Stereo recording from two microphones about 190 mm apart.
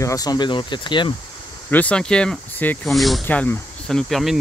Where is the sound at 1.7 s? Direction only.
5° left (ahead or behind).